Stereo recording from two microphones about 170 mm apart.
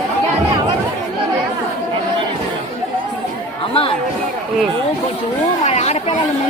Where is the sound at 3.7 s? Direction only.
35° left (ahead or behind).